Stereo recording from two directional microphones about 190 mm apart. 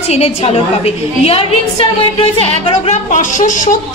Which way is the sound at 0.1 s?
35° left (ahead or behind).